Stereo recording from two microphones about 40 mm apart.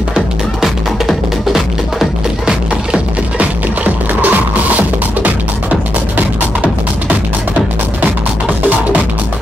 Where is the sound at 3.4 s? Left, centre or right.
Right.